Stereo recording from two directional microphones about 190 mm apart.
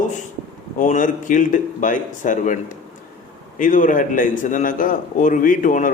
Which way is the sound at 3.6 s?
45° left (ahead or behind).